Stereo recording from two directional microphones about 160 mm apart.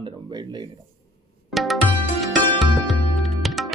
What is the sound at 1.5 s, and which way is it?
Music, centre (ahead or behind).